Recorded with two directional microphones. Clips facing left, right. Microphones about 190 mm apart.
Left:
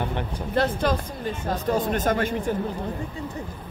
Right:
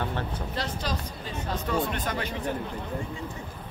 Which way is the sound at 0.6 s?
55° left (ahead or behind).